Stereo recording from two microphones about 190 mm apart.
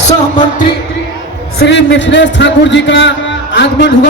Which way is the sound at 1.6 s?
65° left (ahead or behind).